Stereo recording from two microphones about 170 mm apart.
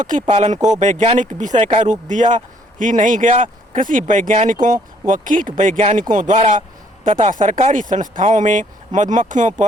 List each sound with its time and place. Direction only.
0.0 s speech: 45° right (ahead or behind)